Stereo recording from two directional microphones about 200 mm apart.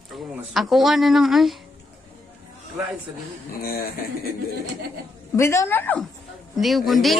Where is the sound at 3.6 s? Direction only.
50° left (ahead or behind).